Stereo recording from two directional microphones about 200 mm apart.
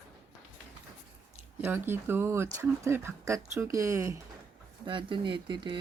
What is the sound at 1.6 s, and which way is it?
Speech, 10° right (ahead or behind).